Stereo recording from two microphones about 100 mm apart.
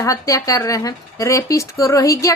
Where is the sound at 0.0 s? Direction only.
35° left (ahead or behind).